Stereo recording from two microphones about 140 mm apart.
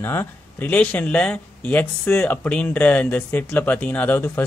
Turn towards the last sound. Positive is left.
turn(degrees=10)  # may be behind; listen again after turning